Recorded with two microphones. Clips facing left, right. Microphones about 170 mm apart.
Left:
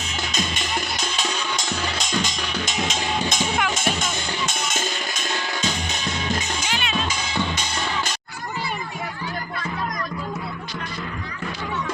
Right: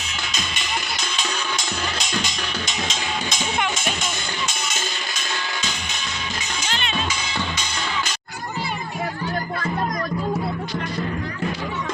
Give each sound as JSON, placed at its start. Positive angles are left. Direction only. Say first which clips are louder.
{"t": 0.3, "sound": "music", "louder": "left 5 dB", "side_deg": 45}
{"t": 2.6, "sound": "music", "louder": "left 2 dB", "side_deg": 5}
{"t": 2.9, "sound": "music", "louder": "left 3 dB", "side_deg": 50}
{"t": 6.7, "sound": "music", "louder": "right 2 dB", "side_deg": 5}